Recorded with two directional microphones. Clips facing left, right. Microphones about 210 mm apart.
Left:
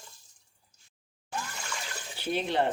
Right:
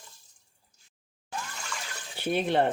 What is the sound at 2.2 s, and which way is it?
Speech, 55° right (ahead or behind).